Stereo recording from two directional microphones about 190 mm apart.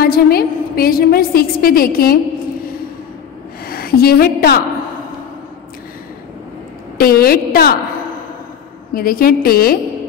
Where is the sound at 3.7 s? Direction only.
55° left (ahead or behind).